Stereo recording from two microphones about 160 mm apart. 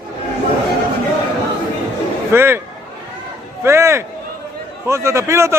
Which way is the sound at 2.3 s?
15° right (ahead or behind).